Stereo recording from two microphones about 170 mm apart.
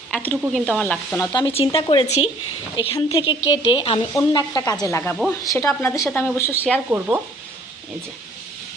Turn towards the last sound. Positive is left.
turn(degrees=-10)  # may be behind; listen again after turning